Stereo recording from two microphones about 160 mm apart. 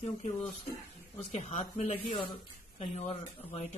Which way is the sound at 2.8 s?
40° left (ahead or behind).